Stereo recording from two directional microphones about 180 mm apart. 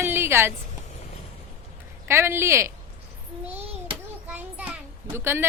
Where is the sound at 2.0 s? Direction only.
15° right (ahead or behind).